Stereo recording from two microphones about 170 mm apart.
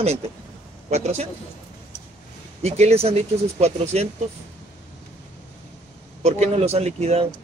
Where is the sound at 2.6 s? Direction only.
40° right (ahead or behind).